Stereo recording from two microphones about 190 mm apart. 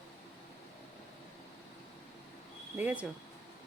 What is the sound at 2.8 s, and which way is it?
Speech, 10° right (ahead or behind).